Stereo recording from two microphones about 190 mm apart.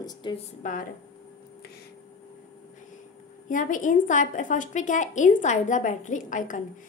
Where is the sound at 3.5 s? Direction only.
45° left (ahead or behind).